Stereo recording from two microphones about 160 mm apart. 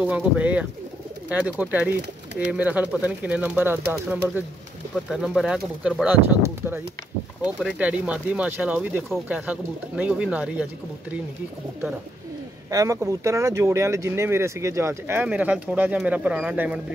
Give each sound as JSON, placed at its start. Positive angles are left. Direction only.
{"t": 0.0, "sound": "speech", "side_deg": -10}
{"t": 4.9, "sound": "speech", "side_deg": 0}
{"t": 12.7, "sound": "speech", "side_deg": -20}